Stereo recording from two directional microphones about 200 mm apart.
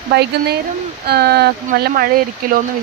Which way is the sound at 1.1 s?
55° right (ahead or behind).